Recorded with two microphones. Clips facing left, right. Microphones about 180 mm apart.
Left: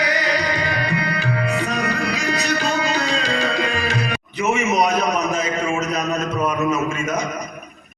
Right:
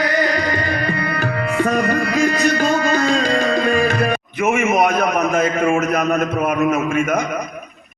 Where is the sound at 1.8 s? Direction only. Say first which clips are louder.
Right 6 dB; 50° right (ahead or behind).